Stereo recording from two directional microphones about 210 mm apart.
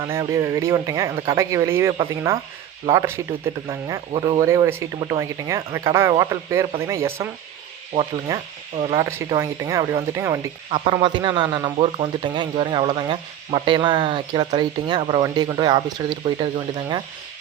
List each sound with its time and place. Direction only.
0.1 s a man's voice: 15° right (ahead or behind)
4.4 s speech: 15° right (ahead or behind)
7.9 s ratchet: 40° right (ahead or behind)
8.3 s a man's voice: 25° right (ahead or behind)